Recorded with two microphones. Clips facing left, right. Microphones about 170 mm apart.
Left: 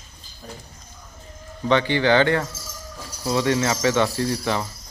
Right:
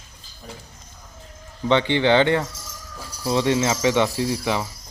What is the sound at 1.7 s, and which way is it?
Speech, 20° right (ahead or behind).